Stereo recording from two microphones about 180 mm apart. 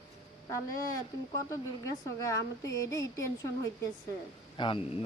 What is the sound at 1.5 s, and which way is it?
Speech, 15° left (ahead or behind).